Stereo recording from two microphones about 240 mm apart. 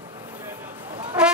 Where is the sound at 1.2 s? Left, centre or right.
Centre.